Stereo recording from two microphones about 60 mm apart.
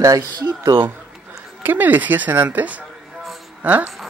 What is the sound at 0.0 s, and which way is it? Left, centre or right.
Speech, right.